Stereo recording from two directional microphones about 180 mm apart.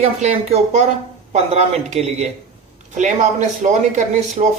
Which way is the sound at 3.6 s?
45° right (ahead or behind).